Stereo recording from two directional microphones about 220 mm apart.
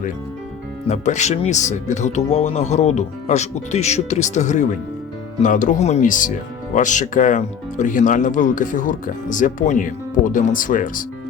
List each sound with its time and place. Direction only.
0.9 s speech: 30° left (ahead or behind)